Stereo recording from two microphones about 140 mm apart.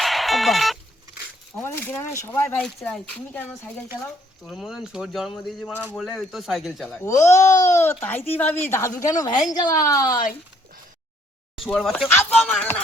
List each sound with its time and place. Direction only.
0.0 s music: centre (ahead or behind)
1.6 s speech: 15° left (ahead or behind)
2.6 s speech: 5° left (ahead or behind)
4.0 s speech: centre (ahead or behind)
7.3 s a woman's voice: 20° left (ahead or behind)
11.6 s speech: centre (ahead or behind)
12.0 s speech: 15° left (ahead or behind)